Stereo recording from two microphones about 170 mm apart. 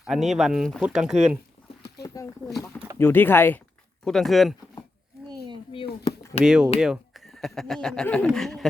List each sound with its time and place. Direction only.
0.0 s speech: 5° right (ahead or behind)
1.8 s a sound: 20° left (ahead or behind)
3.0 s speech: 10° left (ahead or behind)
4.0 s speech: centre (ahead or behind)
5.7 s speech: 35° left (ahead or behind)
6.4 s speech: 5° right (ahead or behind)